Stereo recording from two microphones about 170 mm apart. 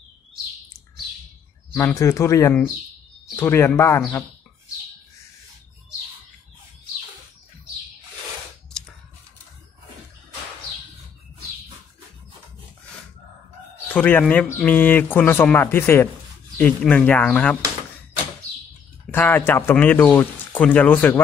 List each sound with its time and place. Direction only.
1.8 s speech: 15° left (ahead or behind)
13.9 s speech: 10° left (ahead or behind)
19.0 s speech: 10° left (ahead or behind)